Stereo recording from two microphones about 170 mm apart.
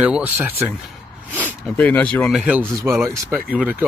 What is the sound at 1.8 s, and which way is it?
Speech, 10° left (ahead or behind).